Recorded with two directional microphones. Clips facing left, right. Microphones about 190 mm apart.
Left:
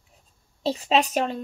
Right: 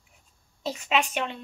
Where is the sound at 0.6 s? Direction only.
35° left (ahead or behind).